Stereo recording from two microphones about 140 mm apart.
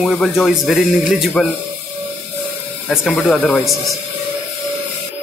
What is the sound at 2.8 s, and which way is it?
Speech, 10° left (ahead or behind).